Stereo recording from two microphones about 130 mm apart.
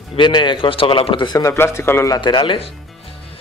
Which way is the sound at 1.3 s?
20° left (ahead or behind).